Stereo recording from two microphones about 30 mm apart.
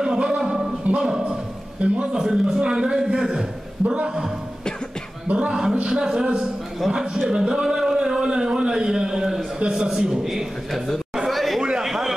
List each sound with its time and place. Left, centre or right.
0.0 s music: right
0.8 s speech: right
1.8 s a man's voice: right
2.1 s a man's voice: right
5.4 s a man's voice: right
7.6 s a sound: centre
9.7 s a man's voice: right
11.2 s chatter: centre
11.8 s a sound: centre